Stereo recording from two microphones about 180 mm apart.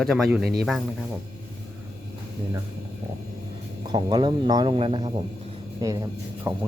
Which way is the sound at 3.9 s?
25° right (ahead or behind).